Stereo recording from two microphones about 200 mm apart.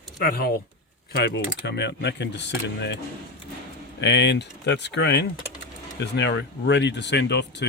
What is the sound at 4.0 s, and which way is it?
Speech, 60° left (ahead or behind).